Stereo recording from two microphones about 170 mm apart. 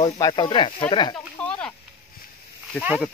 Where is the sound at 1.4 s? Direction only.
5° left (ahead or behind).